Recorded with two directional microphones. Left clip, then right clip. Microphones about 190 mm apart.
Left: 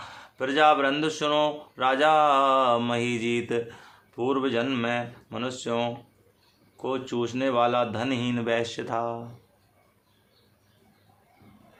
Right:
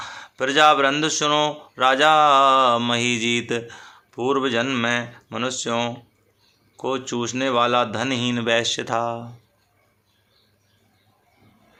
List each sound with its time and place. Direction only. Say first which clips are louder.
0.0 s speech: right 6 dB; 25° right (ahead or behind)